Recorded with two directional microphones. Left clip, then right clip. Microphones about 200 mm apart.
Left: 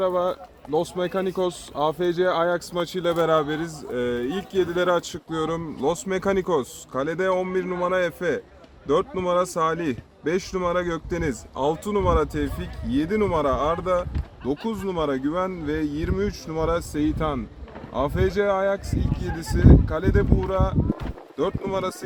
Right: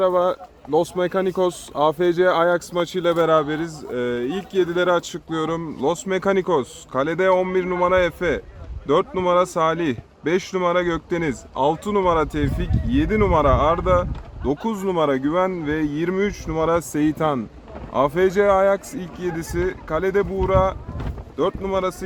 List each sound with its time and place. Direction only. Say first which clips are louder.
0.0 s speech: right 5 dB; 30° right (ahead or behind)